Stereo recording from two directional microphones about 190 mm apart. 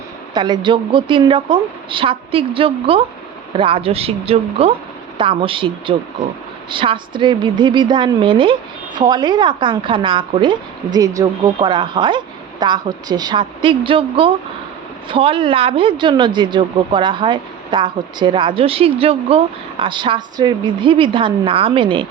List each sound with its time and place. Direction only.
0.3 s speech: 25° right (ahead or behind)